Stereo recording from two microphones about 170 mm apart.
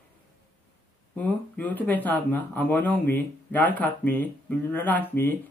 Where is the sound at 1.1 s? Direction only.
10° left (ahead or behind).